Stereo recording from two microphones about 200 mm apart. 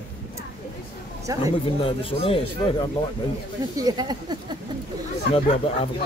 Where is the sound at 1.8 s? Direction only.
25° left (ahead or behind).